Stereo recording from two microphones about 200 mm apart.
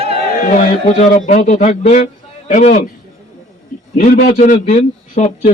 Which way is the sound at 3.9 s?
40° left (ahead or behind).